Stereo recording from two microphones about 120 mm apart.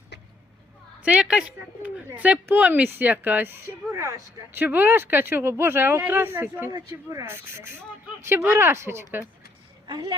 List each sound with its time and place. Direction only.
1.0 s speech: 10° right (ahead or behind)
6.7 s speech: 30° right (ahead or behind)
9.8 s a woman's voice: 40° right (ahead or behind)